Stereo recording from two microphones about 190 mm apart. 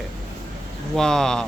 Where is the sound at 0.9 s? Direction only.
5° left (ahead or behind).